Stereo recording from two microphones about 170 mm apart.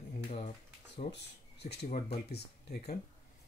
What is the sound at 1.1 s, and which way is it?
Speech, 75° left (ahead or behind).